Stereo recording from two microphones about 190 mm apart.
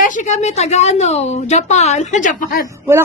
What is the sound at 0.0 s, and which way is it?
A woman's voice, 40° left (ahead or behind).